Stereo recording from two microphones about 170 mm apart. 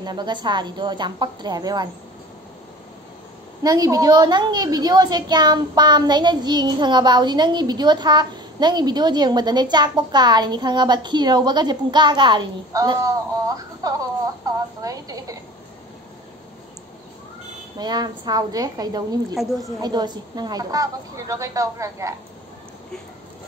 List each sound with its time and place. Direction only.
0.0 s a woman's voice: 25° right (ahead or behind)
3.6 s a woman's voice: 20° right (ahead or behind)
17.7 s a woman's voice: 25° right (ahead or behind)
19.3 s a woman's voice: centre (ahead or behind)
19.8 s a woman's voice: 25° right (ahead or behind)